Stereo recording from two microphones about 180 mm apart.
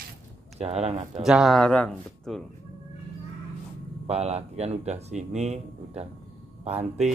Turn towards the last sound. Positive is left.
turn(degrees=-35)  # may be behind; listen again after turning